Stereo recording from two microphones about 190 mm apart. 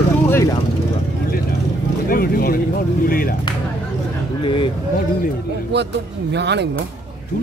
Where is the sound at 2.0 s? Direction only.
50° left (ahead or behind).